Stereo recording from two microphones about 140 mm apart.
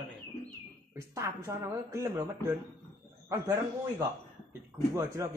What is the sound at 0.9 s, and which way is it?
A man's voice, 20° right (ahead or behind).